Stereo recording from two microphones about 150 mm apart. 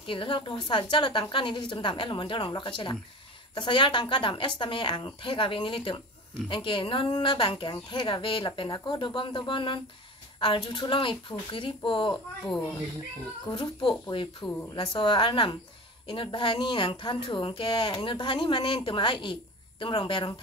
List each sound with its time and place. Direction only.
0.0 s speech: 35° left (ahead or behind)
13.8 s speech: 35° left (ahead or behind)